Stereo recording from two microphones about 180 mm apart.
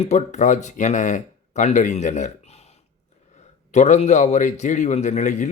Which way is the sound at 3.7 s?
40° left (ahead or behind).